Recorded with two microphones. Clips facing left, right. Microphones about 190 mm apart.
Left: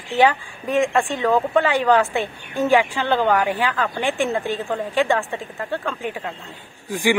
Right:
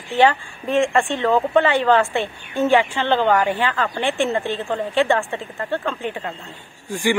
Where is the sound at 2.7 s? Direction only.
5° left (ahead or behind).